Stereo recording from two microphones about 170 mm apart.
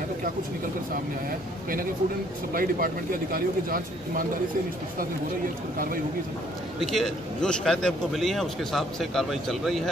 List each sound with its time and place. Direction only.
2.5 s speech: 60° right (ahead or behind)
6.8 s a man's voice: centre (ahead or behind)